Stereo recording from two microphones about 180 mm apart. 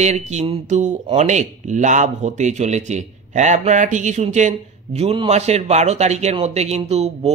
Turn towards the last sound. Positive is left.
turn(degrees=-35)  # may be behind; listen again after turning